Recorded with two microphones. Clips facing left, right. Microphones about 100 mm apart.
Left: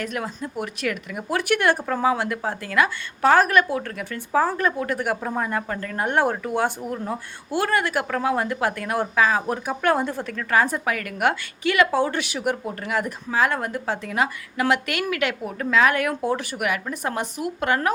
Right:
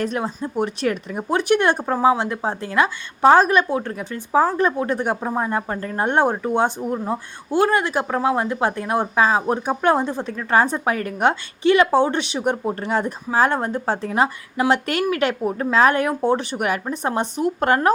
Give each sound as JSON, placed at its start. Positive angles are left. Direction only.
{"t": 0.0, "sound": "speech", "side_deg": -30}
{"t": 1.4, "sound": "speech", "side_deg": -20}